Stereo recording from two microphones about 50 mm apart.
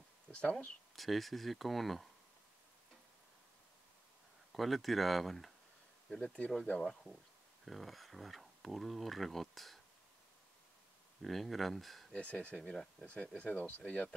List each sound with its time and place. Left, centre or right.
0.3 s speech: left
0.9 s speech: centre
4.5 s speech: centre
6.1 s speech: left
6.8 s speech: centre
11.2 s speech: centre
12.1 s speech: left